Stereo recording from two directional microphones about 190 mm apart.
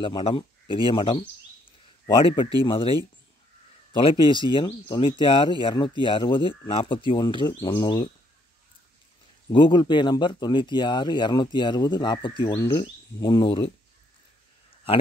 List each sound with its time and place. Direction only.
0.0 s speech: 25° left (ahead or behind)
4.0 s speech: 25° left (ahead or behind)
9.5 s speech: 25° left (ahead or behind)